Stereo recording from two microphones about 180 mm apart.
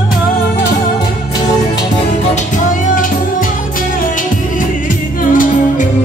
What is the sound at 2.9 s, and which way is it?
Music, 50° left (ahead or behind).